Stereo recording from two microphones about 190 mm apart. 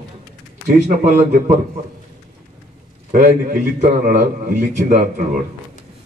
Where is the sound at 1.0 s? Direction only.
45° right (ahead or behind).